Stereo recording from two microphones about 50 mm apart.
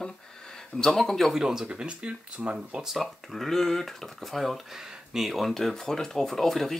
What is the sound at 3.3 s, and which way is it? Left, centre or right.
Speech, centre.